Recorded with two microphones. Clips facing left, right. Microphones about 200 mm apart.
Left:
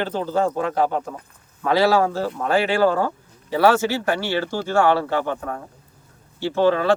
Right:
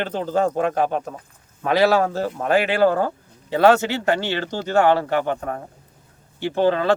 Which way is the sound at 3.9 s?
20° right (ahead or behind).